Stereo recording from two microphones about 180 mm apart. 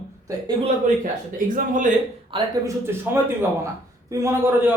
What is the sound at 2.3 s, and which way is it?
Speech, 30° right (ahead or behind).